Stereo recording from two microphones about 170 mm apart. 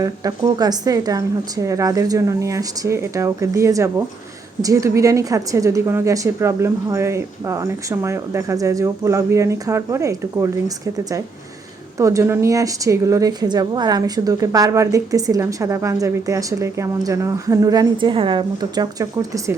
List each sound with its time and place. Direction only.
0.0 s a woman's voice: 20° right (ahead or behind)
11.9 s a woman's voice: 20° right (ahead or behind)